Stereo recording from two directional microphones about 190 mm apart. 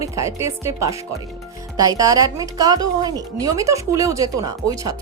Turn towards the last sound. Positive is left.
turn(degrees=-20)  # may be behind; listen again after turning